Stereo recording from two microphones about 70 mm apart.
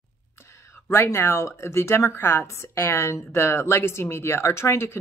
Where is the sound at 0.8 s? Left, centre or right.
Left.